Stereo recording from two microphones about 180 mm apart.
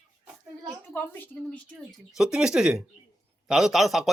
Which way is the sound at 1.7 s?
Centre (ahead or behind).